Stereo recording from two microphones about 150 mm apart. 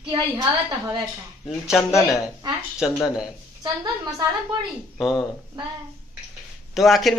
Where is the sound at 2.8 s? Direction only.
5° right (ahead or behind).